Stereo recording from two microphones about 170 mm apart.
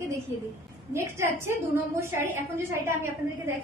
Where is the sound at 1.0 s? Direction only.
15° right (ahead or behind).